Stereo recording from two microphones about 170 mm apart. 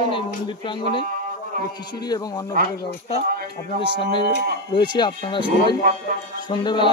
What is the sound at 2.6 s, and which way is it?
Speech, 60° right (ahead or behind).